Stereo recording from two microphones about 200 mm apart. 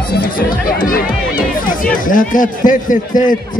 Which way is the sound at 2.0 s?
40° left (ahead or behind).